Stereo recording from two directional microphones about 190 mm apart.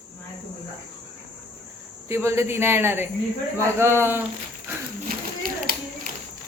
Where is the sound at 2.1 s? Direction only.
15° right (ahead or behind).